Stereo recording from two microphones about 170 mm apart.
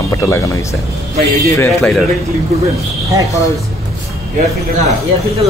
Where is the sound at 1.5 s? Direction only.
10° left (ahead or behind).